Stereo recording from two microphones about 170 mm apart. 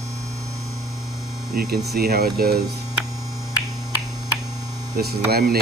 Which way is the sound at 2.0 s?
70° right (ahead or behind).